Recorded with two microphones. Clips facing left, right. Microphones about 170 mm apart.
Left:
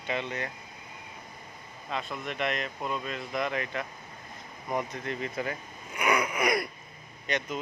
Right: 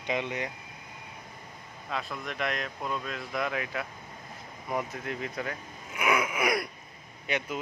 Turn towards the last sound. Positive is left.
turn(degrees=-10)  # may be behind; listen again after turning